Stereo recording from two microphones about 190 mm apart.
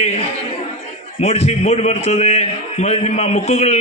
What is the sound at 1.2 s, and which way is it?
A man's voice, 35° left (ahead or behind).